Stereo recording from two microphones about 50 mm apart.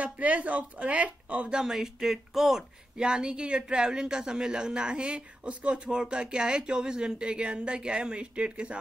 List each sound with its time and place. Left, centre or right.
0.0 s speech: right
1.6 s speech: centre
3.0 s speech: centre